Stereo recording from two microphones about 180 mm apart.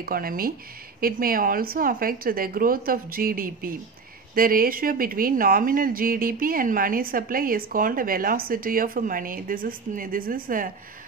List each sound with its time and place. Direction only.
0.0 s speech: 55° right (ahead or behind)